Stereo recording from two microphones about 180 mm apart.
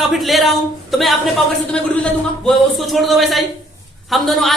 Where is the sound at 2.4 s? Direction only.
Centre (ahead or behind).